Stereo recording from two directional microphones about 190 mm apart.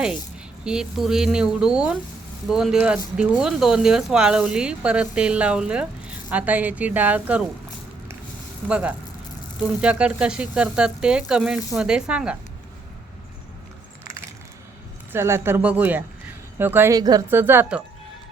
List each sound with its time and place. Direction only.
0.6 s speech: 5° right (ahead or behind)
9.6 s speech: 5° right (ahead or behind)
15.1 s speech: 15° right (ahead or behind)